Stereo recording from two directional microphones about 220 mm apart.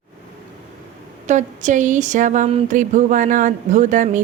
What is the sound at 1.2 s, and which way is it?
Speech, 35° right (ahead or behind).